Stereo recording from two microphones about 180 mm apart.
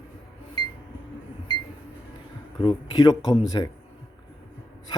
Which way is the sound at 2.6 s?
25° left (ahead or behind).